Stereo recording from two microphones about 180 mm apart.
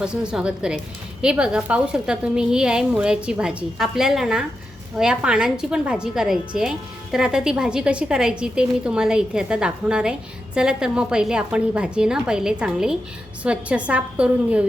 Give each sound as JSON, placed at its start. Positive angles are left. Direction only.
{"t": 0.0, "sound": "a woman's voice", "side_deg": -5}